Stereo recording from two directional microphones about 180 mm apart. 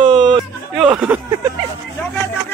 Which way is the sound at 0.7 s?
5° right (ahead or behind).